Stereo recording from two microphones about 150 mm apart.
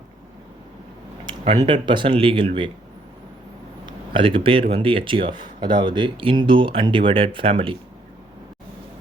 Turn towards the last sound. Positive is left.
turn(degrees=-35)  # may be behind; listen again after turning